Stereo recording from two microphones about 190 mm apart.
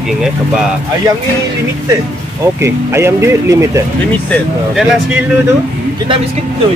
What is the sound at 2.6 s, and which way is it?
Speech, 15° right (ahead or behind).